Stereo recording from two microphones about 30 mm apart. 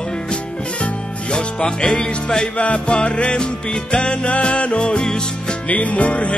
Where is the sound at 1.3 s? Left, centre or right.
Left.